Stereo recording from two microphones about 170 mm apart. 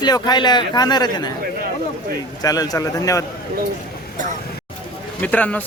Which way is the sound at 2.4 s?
20° left (ahead or behind).